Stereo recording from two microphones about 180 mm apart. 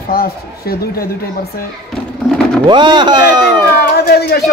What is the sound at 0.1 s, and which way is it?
Speech, 55° left (ahead or behind).